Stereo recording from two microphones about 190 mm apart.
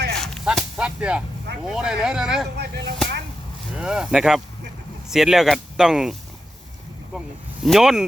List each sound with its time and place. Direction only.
0.2 s whip: centre (ahead or behind)
1.6 s speech: 5° right (ahead or behind)
2.6 s speech: 60° right (ahead or behind)
3.8 s speech: 5° right (ahead or behind)
7.6 s speech: centre (ahead or behind)